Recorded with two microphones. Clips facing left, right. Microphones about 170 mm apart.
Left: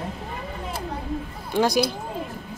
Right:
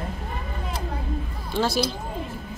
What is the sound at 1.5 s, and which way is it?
Speech, 15° left (ahead or behind).